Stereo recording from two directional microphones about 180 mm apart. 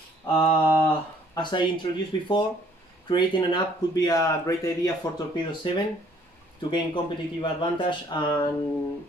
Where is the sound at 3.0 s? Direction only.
25° left (ahead or behind).